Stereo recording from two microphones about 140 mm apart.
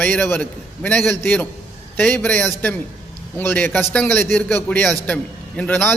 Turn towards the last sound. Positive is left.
turn(degrees=10)  # may be behind; listen again after turning